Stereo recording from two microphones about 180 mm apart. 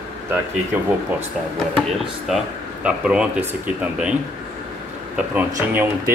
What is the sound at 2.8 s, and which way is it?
Speech, 5° right (ahead or behind).